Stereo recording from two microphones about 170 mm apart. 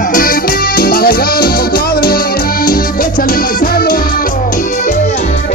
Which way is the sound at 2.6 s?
55° left (ahead or behind).